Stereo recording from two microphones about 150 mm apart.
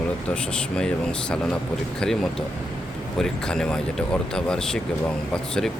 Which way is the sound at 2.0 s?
Centre (ahead or behind).